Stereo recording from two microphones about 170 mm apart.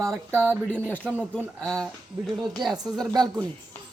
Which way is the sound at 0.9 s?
10° left (ahead or behind).